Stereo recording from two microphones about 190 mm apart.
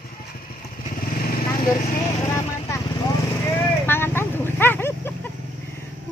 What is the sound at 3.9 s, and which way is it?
Vehicle, 10° left (ahead or behind).